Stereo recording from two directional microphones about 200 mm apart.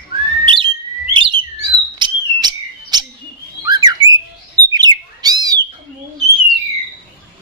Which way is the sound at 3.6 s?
20° right (ahead or behind).